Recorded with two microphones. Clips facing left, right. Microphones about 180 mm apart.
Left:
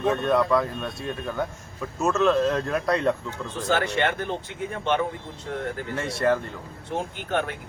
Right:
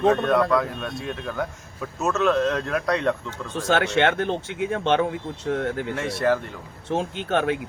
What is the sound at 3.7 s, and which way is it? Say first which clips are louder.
A man's voice: right 4 dB; 75° right (ahead or behind).